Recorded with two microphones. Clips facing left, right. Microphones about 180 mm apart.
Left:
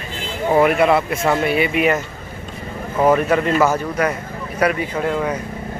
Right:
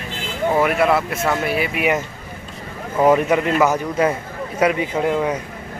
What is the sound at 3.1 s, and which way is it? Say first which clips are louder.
A man's voice: even; 15° right (ahead or behind).